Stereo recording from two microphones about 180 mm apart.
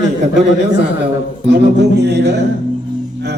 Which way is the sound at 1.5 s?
70° right (ahead or behind).